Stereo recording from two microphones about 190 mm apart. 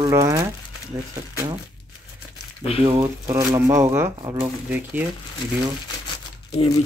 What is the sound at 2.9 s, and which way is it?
Speech, 15° right (ahead or behind).